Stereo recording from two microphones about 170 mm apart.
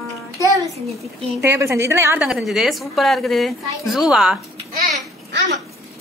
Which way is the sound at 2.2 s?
Centre (ahead or behind).